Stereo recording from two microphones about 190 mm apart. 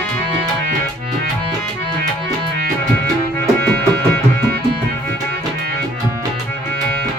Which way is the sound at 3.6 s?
10° left (ahead or behind).